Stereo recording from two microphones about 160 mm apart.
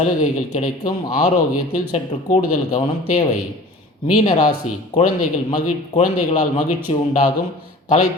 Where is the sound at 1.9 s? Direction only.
40° left (ahead or behind).